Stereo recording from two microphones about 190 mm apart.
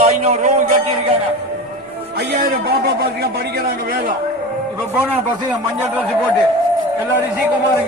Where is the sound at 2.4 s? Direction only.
55° right (ahead or behind).